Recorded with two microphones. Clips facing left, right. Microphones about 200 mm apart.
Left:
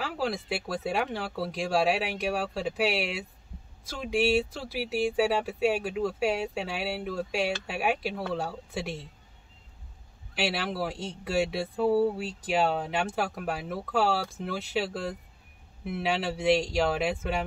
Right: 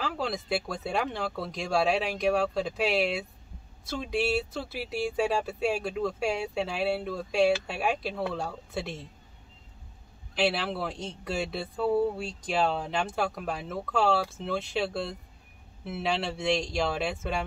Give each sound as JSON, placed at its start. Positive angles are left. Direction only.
{"t": 0.0, "sound": "speech", "side_deg": 5}
{"t": 4.7, "sound": "speech", "side_deg": 5}
{"t": 10.3, "sound": "speech", "side_deg": 10}